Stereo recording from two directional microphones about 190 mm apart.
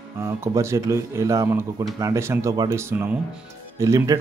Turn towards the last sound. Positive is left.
turn(degrees=-15)  # may be behind; listen again after turning